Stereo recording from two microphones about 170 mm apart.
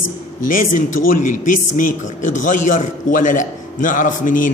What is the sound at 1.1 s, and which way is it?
A man's voice, 55° left (ahead or behind).